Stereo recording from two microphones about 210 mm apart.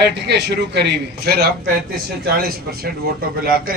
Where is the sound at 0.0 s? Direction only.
55° right (ahead or behind).